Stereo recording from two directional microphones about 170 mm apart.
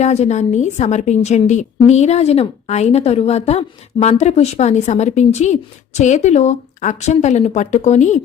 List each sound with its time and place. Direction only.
0.0 s a woman's voice: 40° left (ahead or behind)